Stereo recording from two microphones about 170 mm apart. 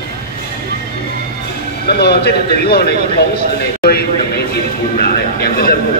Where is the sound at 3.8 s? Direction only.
65° left (ahead or behind).